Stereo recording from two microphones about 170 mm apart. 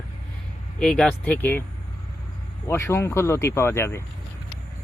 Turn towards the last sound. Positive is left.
turn(degrees=15)  # may be behind; listen again after turning